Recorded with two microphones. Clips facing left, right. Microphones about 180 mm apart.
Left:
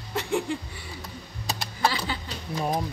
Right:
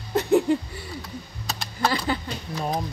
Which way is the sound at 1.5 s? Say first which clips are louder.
Even; 15° left (ahead or behind).